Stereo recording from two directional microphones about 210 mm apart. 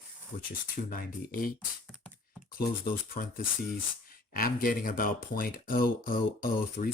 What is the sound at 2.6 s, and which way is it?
Speech, 45° left (ahead or behind).